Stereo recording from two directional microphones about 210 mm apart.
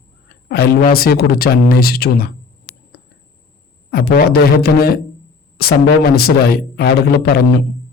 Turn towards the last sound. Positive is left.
turn(degrees=50)  # may be behind; listen again after turning